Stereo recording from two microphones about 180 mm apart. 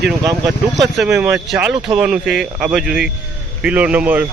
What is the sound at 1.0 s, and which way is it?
A man's voice, 5° right (ahead or behind).